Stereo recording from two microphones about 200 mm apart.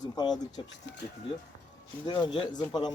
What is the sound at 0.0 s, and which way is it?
Speech, 20° left (ahead or behind).